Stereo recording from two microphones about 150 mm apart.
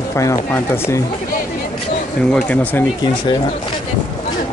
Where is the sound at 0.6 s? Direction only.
15° left (ahead or behind).